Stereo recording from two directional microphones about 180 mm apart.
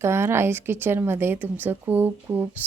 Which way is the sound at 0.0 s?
15° right (ahead or behind).